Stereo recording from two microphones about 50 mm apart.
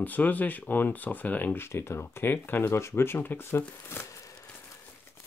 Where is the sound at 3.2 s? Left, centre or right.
Left.